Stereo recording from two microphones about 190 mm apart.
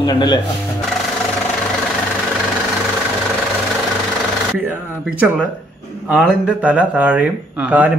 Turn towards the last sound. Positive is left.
turn(degrees=-5)  # may be behind; listen again after turning